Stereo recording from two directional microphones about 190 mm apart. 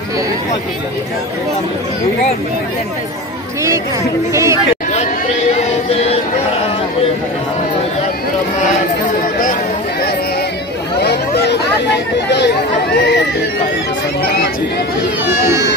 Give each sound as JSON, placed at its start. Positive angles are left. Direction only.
{"t": 4.3, "sound": "speech", "side_deg": -15}
{"t": 5.9, "sound": "a sound", "side_deg": 35}
{"t": 11.0, "sound": "chatter", "side_deg": 60}
{"t": 15.2, "sound": "speech", "side_deg": -15}